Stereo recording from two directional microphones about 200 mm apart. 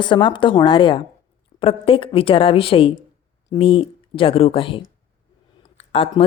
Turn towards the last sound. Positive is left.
turn(degrees=30)  # may be behind; listen again after turning